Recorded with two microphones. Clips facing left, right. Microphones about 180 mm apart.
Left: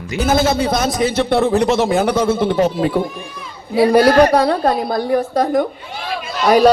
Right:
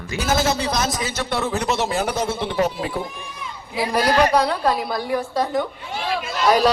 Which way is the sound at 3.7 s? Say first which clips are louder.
Left 9 dB; 60° left (ahead or behind).